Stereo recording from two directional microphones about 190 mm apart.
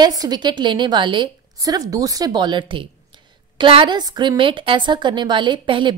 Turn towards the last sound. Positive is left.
turn(degrees=-25)  # may be behind; listen again after turning